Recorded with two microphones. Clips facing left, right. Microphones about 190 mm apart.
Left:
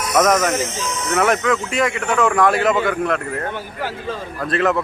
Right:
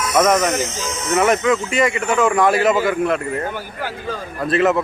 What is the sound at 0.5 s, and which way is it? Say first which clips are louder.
Speech: even; 30° left (ahead or behind).